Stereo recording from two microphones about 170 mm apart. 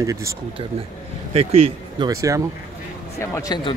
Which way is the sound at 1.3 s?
35° right (ahead or behind).